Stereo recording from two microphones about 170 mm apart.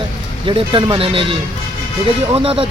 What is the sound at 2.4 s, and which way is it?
Speech, 30° right (ahead or behind).